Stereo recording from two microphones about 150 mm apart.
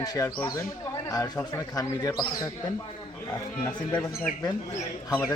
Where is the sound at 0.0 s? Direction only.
25° left (ahead or behind).